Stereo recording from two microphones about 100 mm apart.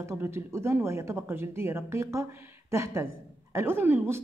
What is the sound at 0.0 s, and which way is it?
Speech, 25° right (ahead or behind).